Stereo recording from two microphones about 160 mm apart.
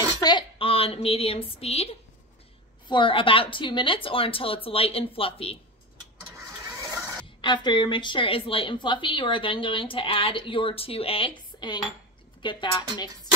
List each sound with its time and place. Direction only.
0.2 s a woman's voice: 30° left (ahead or behind)
7.4 s a woman's voice: 30° left (ahead or behind)